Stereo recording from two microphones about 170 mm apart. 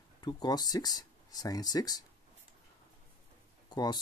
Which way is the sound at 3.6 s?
25° left (ahead or behind).